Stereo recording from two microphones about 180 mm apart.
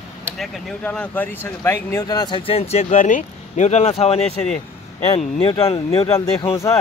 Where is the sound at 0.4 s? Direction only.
5° left (ahead or behind); by 6.1 s 35° left (ahead or behind).